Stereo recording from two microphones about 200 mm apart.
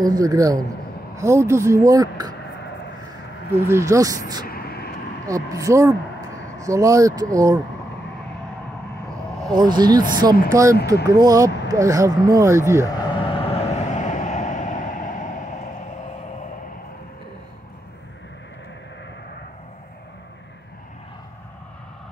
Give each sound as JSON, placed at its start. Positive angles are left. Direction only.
{"t": 0.0, "sound": "speech", "side_deg": -20}
{"t": 3.6, "sound": "speech", "side_deg": -15}
{"t": 4.5, "sound": "vehicle", "side_deg": 50}
{"t": 5.2, "sound": "speech", "side_deg": -15}
{"t": 9.5, "sound": "speech", "side_deg": -20}
{"t": 13.2, "sound": "vehicle", "side_deg": 25}